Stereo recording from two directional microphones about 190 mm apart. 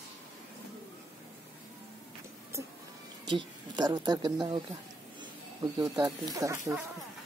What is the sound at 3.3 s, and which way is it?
Speech, 20° right (ahead or behind).